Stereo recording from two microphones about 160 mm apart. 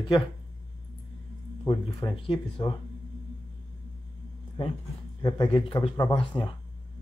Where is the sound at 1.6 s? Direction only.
25° left (ahead or behind).